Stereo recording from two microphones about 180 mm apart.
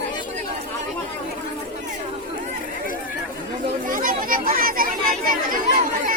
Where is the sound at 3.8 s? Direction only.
50° right (ahead or behind).